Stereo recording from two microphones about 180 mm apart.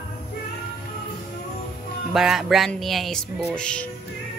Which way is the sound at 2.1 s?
Centre (ahead or behind).